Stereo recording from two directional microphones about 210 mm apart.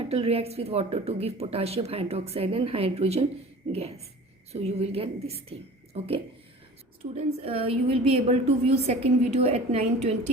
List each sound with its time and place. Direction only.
0.1 s a woman's voice: 30° right (ahead or behind)
7.4 s a woman's voice: 30° right (ahead or behind)